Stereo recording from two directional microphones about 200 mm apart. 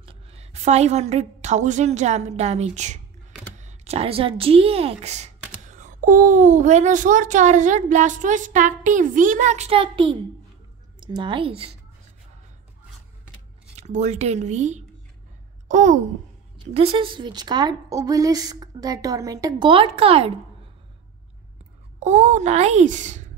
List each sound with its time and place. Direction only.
0.0 s a woman's voice: 30° right (ahead or behind)
13.7 s speech: 35° right (ahead or behind)
16.5 s a woman's voice: 25° right (ahead or behind)
22.0 s speech: 35° right (ahead or behind)